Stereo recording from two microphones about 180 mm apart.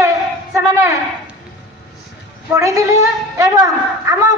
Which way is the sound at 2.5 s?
15° right (ahead or behind).